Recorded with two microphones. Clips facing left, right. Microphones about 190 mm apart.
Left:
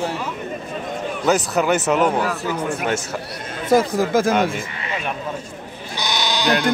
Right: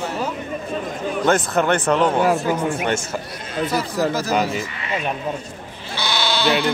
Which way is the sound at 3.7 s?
50° left (ahead or behind).